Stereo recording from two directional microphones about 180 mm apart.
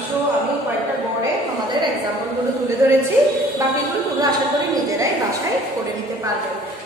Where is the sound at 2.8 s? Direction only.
20° right (ahead or behind).